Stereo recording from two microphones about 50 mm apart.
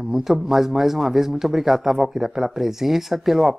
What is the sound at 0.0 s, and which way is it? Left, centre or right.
A man's voice, centre.